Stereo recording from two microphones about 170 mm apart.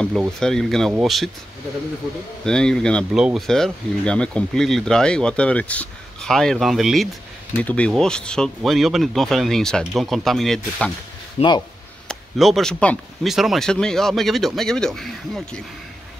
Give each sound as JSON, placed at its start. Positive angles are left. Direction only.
{"t": 0.0, "sound": "speech", "side_deg": 0}
{"t": 2.4, "sound": "speech", "side_deg": 5}
{"t": 11.3, "sound": "speech", "side_deg": 25}
{"t": 12.1, "sound": "speech", "side_deg": 0}